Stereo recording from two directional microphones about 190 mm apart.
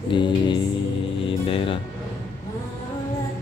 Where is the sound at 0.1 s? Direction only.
25° left (ahead or behind).